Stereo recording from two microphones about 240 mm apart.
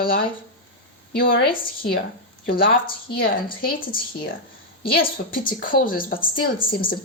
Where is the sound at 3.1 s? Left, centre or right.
Left.